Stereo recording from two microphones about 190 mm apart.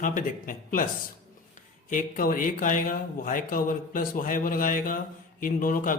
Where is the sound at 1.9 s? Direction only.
45° left (ahead or behind).